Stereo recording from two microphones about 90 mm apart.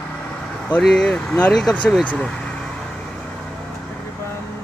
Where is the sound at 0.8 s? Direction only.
5° left (ahead or behind).